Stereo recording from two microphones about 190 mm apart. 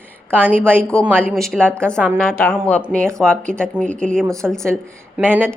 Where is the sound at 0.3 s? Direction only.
10° right (ahead or behind).